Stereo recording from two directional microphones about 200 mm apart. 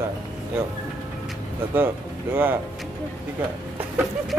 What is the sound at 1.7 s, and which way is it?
Speech, 10° right (ahead or behind).